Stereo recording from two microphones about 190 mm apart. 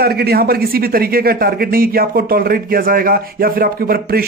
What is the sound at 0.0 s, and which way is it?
A man's voice, 55° right (ahead or behind).